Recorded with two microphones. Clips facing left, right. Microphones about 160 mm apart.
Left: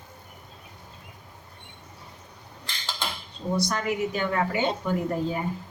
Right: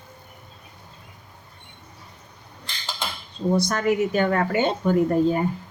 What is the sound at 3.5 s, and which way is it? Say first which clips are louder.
A woman's voice: right 5 dB; 50° right (ahead or behind).